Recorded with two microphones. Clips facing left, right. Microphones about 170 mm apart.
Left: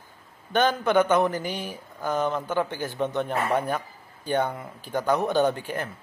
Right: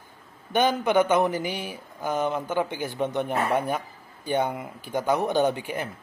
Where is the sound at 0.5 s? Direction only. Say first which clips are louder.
Even; 15° right (ahead or behind).